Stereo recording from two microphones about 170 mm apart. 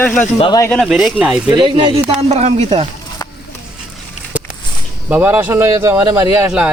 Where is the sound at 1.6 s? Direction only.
30° right (ahead or behind).